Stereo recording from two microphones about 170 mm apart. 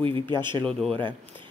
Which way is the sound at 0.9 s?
30° right (ahead or behind).